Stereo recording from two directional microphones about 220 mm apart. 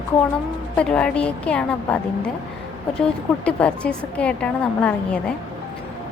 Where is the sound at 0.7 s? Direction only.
5° left (ahead or behind).